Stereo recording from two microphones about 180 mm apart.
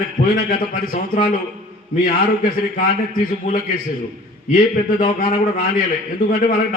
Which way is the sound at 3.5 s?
50° left (ahead or behind).